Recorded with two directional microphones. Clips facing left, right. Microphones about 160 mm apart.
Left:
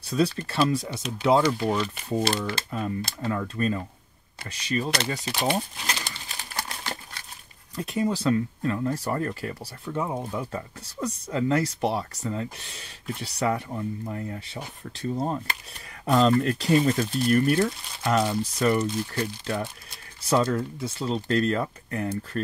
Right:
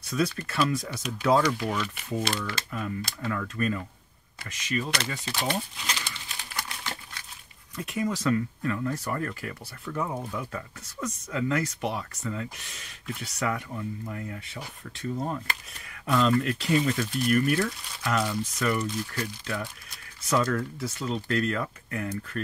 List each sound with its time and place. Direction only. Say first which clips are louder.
0.0 s speech: left 3 dB; 30° left (ahead or behind)
5.2 s speech: left 4 dB; 15° left (ahead or behind)
5.6 s crumpling: left 3 dB; 40° left (ahead or behind)
7.7 s speech: left 3 dB; 35° left (ahead or behind)
9.8 s speech: left 2 dB; 20° left (ahead or behind)